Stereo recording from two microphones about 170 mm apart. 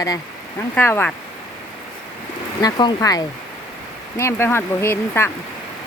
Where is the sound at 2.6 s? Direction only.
25° left (ahead or behind).